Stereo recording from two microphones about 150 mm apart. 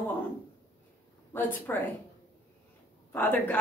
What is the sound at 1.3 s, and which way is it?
Speech, 15° left (ahead or behind).